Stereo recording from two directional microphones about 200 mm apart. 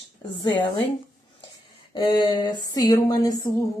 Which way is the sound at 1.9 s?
25° left (ahead or behind).